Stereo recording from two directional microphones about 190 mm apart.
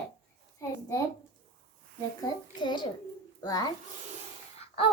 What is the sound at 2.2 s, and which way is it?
A child's voice, 25° left (ahead or behind).